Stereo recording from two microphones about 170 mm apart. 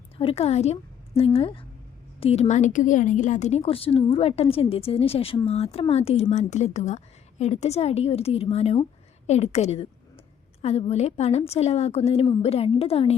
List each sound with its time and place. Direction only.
0.2 s a woman's voice: 35° left (ahead or behind)